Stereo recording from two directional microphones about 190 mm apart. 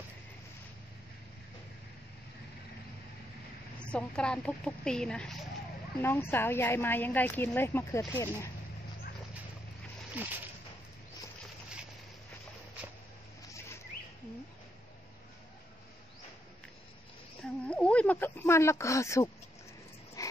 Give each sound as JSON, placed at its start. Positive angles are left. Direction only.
{"t": 3.8, "sound": "a woman's voice", "side_deg": 5}
{"t": 10.2, "sound": "speech", "side_deg": -10}
{"t": 17.4, "sound": "a sound", "side_deg": 5}